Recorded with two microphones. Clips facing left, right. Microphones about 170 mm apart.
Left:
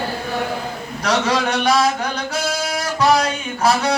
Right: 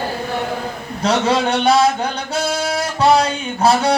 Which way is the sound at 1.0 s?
25° right (ahead or behind).